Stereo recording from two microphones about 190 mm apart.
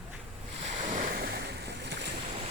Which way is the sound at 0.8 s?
45° right (ahead or behind).